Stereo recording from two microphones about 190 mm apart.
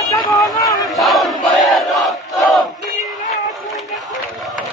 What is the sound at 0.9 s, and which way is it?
Battle cry, centre (ahead or behind).